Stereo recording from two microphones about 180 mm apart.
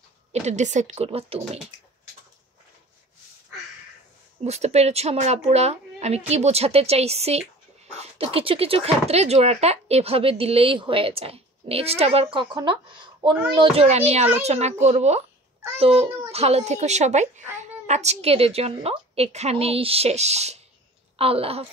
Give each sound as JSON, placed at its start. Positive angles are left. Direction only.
{"t": 0.3, "sound": "speech", "side_deg": -40}
{"t": 4.5, "sound": "speech", "side_deg": -35}